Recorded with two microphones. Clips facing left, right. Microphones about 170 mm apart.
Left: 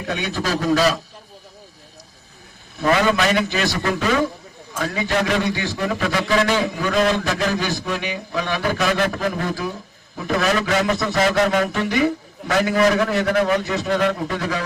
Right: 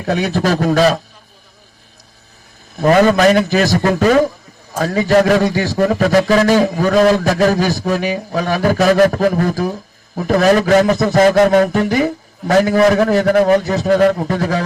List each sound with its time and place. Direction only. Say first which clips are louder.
0.0 s a man's voice: right 8 dB; 40° right (ahead or behind)
0.3 s a man's voice: right 4 dB; 60° right (ahead or behind)
2.7 s a man's voice: right 7 dB; 45° right (ahead or behind)